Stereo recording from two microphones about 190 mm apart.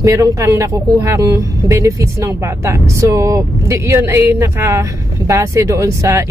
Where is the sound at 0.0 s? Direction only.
15° right (ahead or behind).